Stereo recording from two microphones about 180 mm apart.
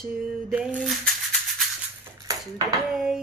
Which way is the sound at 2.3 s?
20° right (ahead or behind).